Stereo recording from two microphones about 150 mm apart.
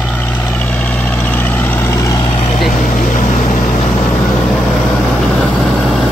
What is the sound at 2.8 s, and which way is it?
Vehicle, 75° left (ahead or behind).